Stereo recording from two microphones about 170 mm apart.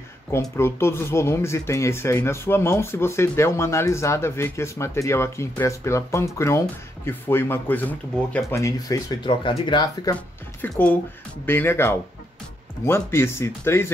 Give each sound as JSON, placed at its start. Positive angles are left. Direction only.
{"t": 0.3, "sound": "speech", "side_deg": 15}
{"t": 10.6, "sound": "speech", "side_deg": 10}